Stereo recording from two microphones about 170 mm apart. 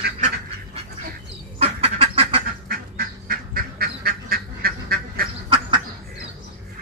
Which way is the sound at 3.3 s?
60° right (ahead or behind).